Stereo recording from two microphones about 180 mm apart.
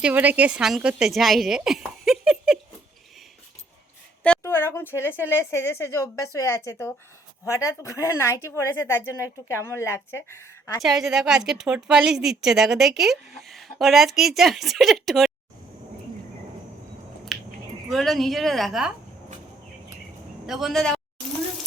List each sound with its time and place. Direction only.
0.0 s a woman's voice: 10° right (ahead or behind)
4.2 s a woman's voice: 10° left (ahead or behind)
10.8 s a woman's voice: centre (ahead or behind)
17.3 s a sound: centre (ahead or behind)
17.9 s a woman's voice: centre (ahead or behind)
20.5 s a woman's voice: centre (ahead or behind)